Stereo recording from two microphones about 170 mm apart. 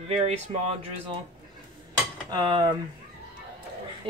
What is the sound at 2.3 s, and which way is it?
Speech, 25° right (ahead or behind).